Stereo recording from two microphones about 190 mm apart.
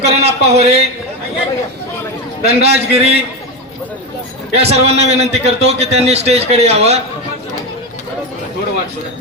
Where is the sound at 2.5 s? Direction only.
35° right (ahead or behind).